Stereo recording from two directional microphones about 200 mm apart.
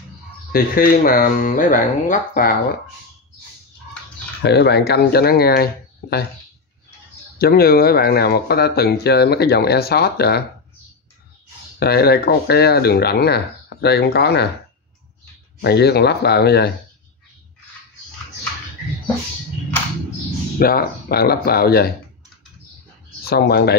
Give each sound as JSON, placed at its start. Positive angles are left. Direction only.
{"t": 0.5, "sound": "speech", "side_deg": 45}
{"t": 4.4, "sound": "speech", "side_deg": 55}
{"t": 7.3, "sound": "speech", "side_deg": 50}
{"t": 11.8, "sound": "speech", "side_deg": 50}
{"t": 15.6, "sound": "speech", "side_deg": 55}
{"t": 20.5, "sound": "speech", "side_deg": 50}
{"t": 23.2, "sound": "speech", "side_deg": 50}